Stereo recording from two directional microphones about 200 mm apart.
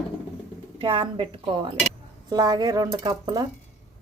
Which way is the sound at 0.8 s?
25° right (ahead or behind).